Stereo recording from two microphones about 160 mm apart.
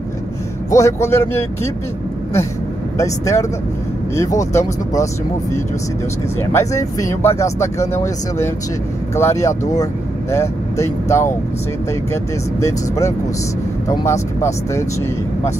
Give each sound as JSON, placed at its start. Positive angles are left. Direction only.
{"t": 0.7, "sound": "speech", "side_deg": 20}
{"t": 3.0, "sound": "speech", "side_deg": 20}
{"t": 6.4, "sound": "speech", "side_deg": 20}